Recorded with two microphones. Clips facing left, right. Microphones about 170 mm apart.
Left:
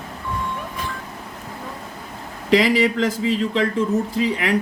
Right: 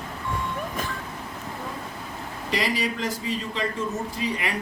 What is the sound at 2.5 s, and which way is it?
Speech, 90° left.